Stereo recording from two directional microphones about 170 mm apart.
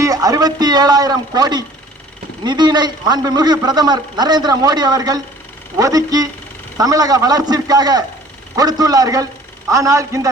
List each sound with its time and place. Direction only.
0.0 s a man's voice: 20° right (ahead or behind)